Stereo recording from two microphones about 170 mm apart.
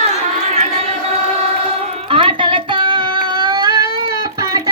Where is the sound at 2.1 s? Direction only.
30° right (ahead or behind).